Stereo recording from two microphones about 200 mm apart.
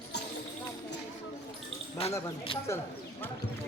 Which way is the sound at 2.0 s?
30° left (ahead or behind).